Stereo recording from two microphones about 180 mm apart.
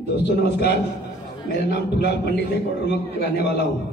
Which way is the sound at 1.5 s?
65° left (ahead or behind).